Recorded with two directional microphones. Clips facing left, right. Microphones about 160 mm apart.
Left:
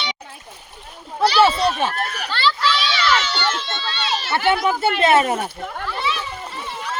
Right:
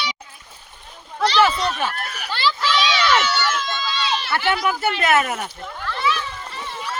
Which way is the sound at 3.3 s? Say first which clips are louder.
Right 1 dB; 30° left (ahead or behind).